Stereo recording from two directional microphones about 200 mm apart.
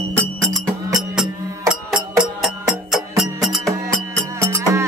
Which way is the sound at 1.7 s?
5° right (ahead or behind).